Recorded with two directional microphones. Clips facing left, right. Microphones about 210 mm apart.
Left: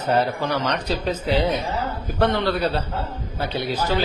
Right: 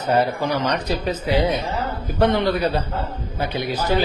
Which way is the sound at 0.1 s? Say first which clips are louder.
Right 2 dB; 15° right (ahead or behind).